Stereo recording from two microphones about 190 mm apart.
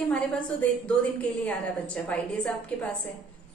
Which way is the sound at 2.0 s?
5° left (ahead or behind).